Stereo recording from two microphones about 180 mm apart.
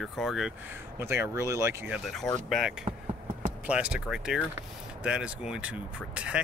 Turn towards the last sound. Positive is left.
turn(degrees=-5)  # may be behind; listen again after turning